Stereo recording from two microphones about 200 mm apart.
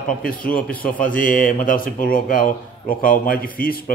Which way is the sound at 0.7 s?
45° left (ahead or behind).